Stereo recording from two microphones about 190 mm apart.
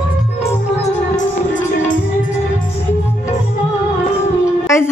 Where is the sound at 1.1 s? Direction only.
45° left (ahead or behind).